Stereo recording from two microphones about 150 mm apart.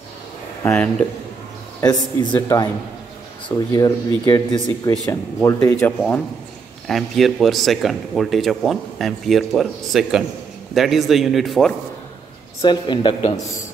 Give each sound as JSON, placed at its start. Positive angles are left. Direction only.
{"t": 0.7, "sound": "speech", "side_deg": 10}
{"t": 2.3, "sound": "speech", "side_deg": 25}
{"t": 5.8, "sound": "speech", "side_deg": 5}
{"t": 12.6, "sound": "speech", "side_deg": 30}